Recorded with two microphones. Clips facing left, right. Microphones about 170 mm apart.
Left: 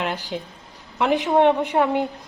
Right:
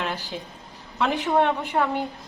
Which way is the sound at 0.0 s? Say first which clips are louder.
Left 3 dB; 15° left (ahead or behind).